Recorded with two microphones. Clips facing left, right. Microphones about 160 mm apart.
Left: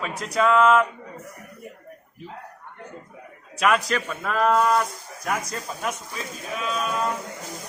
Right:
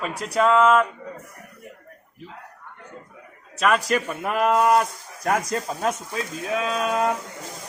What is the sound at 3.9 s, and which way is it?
Speech, 15° right (ahead or behind).